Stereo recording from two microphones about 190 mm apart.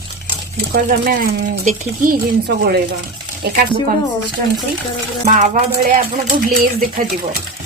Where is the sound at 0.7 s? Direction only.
50° right (ahead or behind).